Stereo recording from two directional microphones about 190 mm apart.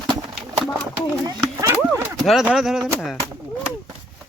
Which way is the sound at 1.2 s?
15° right (ahead or behind).